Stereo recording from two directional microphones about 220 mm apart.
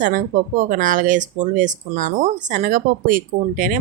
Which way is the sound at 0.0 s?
35° right (ahead or behind).